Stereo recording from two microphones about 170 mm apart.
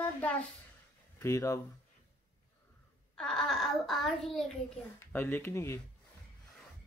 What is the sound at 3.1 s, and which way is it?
A child's voice, 5° left (ahead or behind).